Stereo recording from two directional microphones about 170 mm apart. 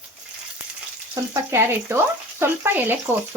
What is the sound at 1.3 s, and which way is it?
Speech, 15° right (ahead or behind).